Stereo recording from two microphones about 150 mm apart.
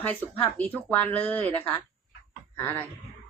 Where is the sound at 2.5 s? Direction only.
15° left (ahead or behind).